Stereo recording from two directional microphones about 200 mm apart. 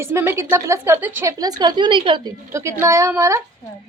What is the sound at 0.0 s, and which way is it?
A woman's voice, 10° right (ahead or behind).